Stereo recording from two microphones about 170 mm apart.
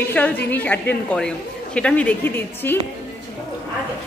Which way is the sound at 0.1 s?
10° left (ahead or behind).